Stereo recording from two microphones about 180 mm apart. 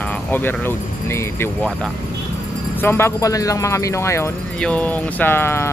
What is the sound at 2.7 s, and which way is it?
Speech, 10° left (ahead or behind).